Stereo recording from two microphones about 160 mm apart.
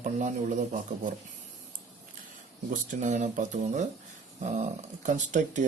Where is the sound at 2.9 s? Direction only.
50° right (ahead or behind).